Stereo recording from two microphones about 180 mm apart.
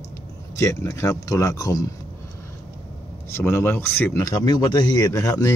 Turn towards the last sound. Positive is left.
turn(degrees=20)  # may be behind; listen again after turning